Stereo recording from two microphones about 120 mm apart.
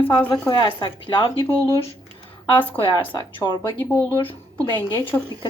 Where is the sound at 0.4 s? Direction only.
35° left (ahead or behind).